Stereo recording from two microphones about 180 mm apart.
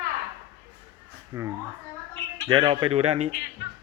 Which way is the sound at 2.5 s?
25° right (ahead or behind).